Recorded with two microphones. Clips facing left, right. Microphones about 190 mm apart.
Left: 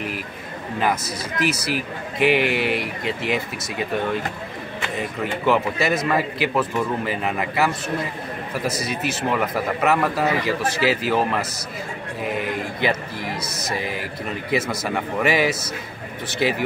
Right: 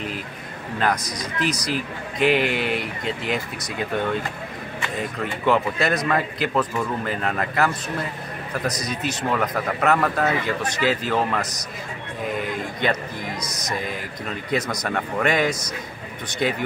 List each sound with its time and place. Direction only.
0.7 s a man's voice: 5° left (ahead or behind)
5.2 s a man's voice: 5° left (ahead or behind)
13.7 s a man's voice: 5° left (ahead or behind)